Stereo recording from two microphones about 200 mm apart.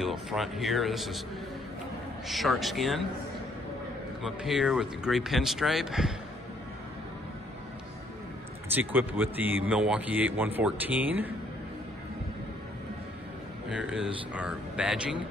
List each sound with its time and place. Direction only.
0.0 s speech: centre (ahead or behind)
2.2 s speech: centre (ahead or behind)
4.2 s speech: 5° right (ahead or behind)
8.7 s speech: 10° right (ahead or behind)
13.7 s speech: 5° right (ahead or behind)